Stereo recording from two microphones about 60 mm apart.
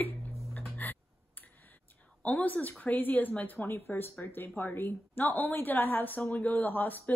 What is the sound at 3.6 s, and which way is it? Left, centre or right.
A woman's voice, left.